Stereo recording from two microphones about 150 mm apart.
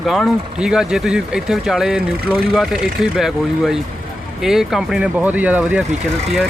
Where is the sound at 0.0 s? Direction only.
Centre (ahead or behind).